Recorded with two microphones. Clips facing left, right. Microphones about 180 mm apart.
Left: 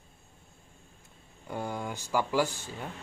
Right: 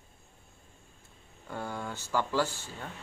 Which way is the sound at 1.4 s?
15° left (ahead or behind).